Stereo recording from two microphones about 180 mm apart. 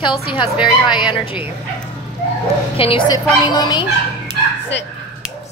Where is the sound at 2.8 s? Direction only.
30° left (ahead or behind).